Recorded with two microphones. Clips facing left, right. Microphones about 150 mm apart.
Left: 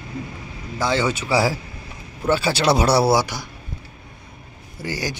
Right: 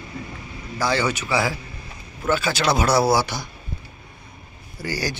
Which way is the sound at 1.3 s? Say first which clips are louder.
Left 3 dB; 35° left (ahead or behind).